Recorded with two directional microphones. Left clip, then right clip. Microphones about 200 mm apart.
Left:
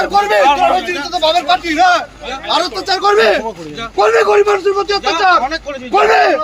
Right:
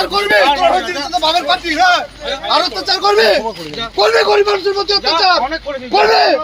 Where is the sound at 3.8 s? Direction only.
30° right (ahead or behind).